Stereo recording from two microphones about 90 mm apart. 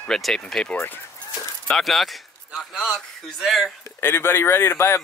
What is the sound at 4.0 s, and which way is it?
Speech, 25° left (ahead or behind).